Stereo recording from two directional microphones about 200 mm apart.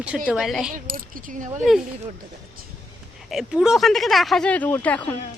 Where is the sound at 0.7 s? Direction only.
45° right (ahead or behind).